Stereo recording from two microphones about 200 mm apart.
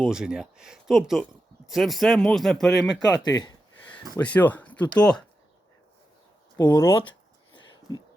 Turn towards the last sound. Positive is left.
turn(degrees=25)  # may be behind; listen again after turning